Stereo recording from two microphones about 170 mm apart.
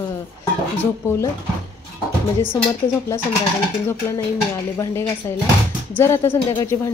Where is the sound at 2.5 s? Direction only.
15° left (ahead or behind).